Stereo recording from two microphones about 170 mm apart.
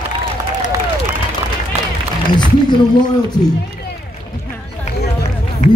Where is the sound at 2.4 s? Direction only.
25° left (ahead or behind).